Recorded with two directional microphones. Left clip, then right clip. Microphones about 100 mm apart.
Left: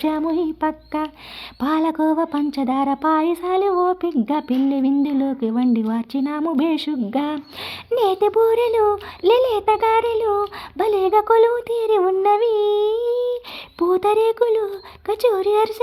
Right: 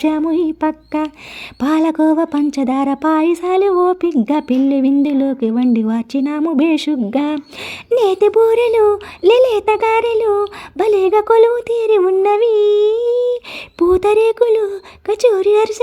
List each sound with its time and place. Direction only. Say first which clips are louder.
0.0 s music: right 5 dB; 35° right (ahead or behind)
1.5 s humming: right 5 dB; 50° right (ahead or behind)